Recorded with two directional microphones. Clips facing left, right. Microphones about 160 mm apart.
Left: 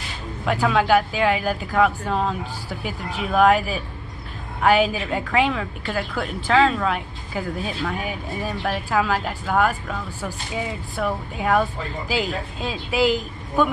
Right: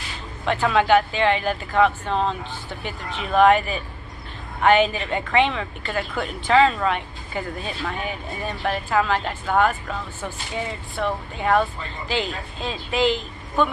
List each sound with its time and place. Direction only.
0.5 s a woman's voice: 5° left (ahead or behind)